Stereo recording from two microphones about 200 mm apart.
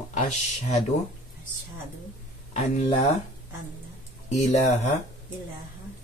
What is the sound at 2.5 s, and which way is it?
Speech, 35° left (ahead or behind).